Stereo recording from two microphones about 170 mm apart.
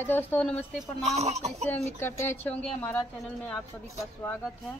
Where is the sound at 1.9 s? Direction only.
15° left (ahead or behind).